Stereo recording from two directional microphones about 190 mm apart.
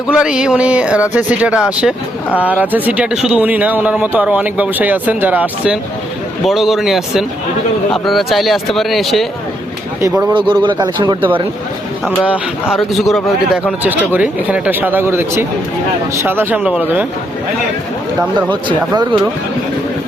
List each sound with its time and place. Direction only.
0.1 s speech: 5° right (ahead or behind)
10.3 s speech: 25° right (ahead or behind)
12.7 s speech: centre (ahead or behind)
18.9 s speech: 20° right (ahead or behind)